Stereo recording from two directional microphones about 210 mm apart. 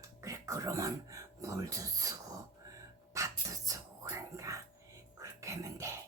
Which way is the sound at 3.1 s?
15° right (ahead or behind).